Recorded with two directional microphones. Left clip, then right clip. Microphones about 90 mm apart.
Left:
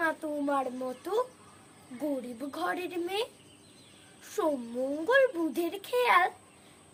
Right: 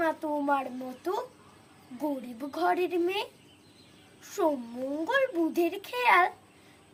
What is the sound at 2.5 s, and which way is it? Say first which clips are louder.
Speech: right 7 dB; 35° left (ahead or behind).